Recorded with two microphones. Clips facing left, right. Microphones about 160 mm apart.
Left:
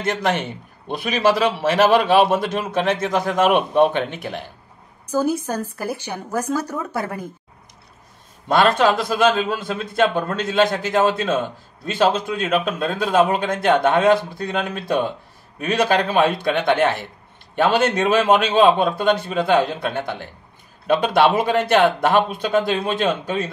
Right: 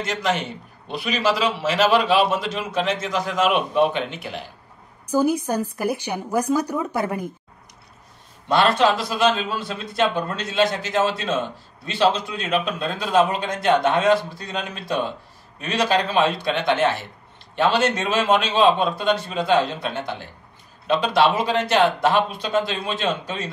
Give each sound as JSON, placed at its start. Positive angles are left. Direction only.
{"t": 0.0, "sound": "a man's voice", "side_deg": 55}
{"t": 5.1, "sound": "a woman's voice", "side_deg": -15}
{"t": 8.5, "sound": "a man's voice", "side_deg": 50}